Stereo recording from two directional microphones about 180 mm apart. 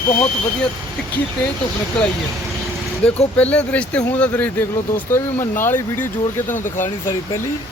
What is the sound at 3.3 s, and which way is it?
Speech, 5° left (ahead or behind).